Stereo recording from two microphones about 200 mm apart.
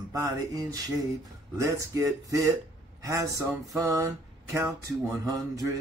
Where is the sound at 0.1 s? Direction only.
15° right (ahead or behind).